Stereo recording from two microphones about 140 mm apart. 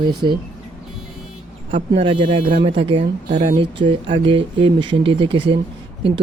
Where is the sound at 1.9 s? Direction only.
40° right (ahead or behind).